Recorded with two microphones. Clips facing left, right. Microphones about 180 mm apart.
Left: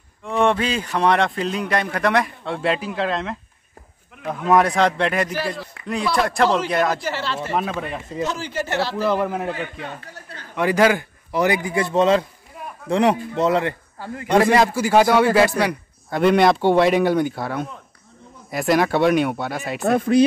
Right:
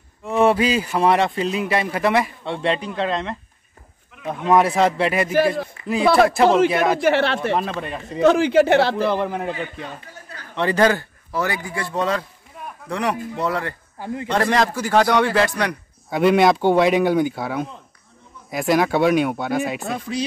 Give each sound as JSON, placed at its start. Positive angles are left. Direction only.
{"t": 0.2, "sound": "a man's voice", "side_deg": -5}
{"t": 5.8, "sound": "a sound", "side_deg": 70}
{"t": 6.2, "sound": "a man's voice", "side_deg": -5}
{"t": 7.0, "sound": "speech", "side_deg": -60}
{"t": 7.8, "sound": "a man's voice", "side_deg": 0}
{"t": 8.2, "sound": "speech", "side_deg": -60}
{"t": 8.9, "sound": "a man's voice", "side_deg": 5}
{"t": 10.5, "sound": "a man's voice", "side_deg": 10}
{"t": 13.9, "sound": "a man's voice", "side_deg": -15}
{"t": 14.3, "sound": "a man's voice", "side_deg": 10}
{"t": 19.8, "sound": "a man's voice", "side_deg": 55}